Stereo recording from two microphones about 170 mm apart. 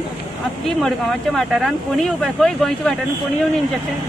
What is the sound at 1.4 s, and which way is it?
Speech, centre (ahead or behind).